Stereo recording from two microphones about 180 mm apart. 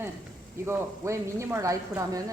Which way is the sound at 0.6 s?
15° right (ahead or behind).